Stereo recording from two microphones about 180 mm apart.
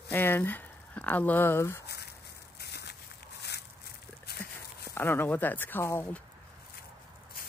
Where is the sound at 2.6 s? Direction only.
65° left (ahead or behind).